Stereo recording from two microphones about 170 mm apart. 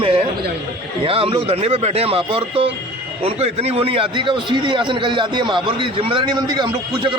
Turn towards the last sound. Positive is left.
turn(degrees=-25)  # may be behind; listen again after turning